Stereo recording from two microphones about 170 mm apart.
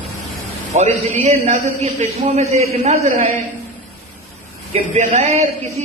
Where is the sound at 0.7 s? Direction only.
40° right (ahead or behind).